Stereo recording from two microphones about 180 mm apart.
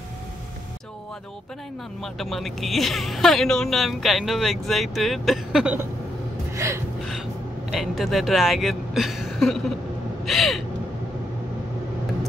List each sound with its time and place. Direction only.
2.1 s speech: centre (ahead or behind)
6.5 s gasp: 15° right (ahead or behind)
7.7 s speech: centre (ahead or behind)
10.2 s gasp: centre (ahead or behind)